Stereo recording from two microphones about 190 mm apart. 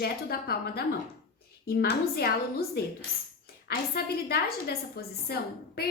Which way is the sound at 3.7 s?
55° left (ahead or behind).